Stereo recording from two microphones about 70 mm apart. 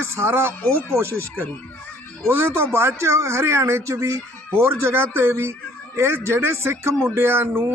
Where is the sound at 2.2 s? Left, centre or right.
Right.